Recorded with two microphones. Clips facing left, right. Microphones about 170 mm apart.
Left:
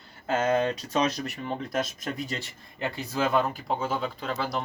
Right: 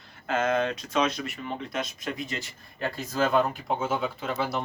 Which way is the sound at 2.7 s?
15° left (ahead or behind).